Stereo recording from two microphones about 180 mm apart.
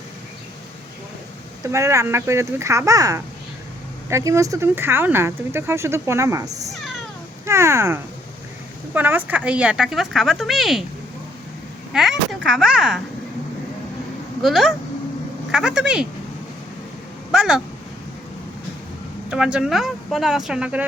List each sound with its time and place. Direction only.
1.6 s speech: 15° right (ahead or behind)
11.9 s speech: centre (ahead or behind)
14.4 s speech: centre (ahead or behind)
17.3 s speech: 5° right (ahead or behind)
19.3 s speech: 5° right (ahead or behind)